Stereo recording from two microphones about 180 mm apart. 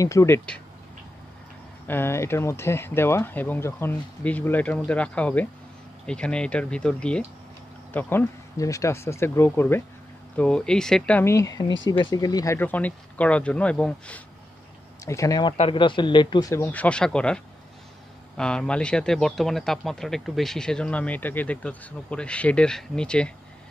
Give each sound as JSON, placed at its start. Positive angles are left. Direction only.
{"t": 0.0, "sound": "speech", "side_deg": 15}
{"t": 1.9, "sound": "a man's voice", "side_deg": 15}
{"t": 15.0, "sound": "speech", "side_deg": 15}
{"t": 15.5, "sound": "a man's voice", "side_deg": 30}